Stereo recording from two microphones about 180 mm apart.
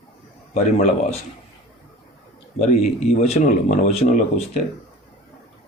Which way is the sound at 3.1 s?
40° left (ahead or behind).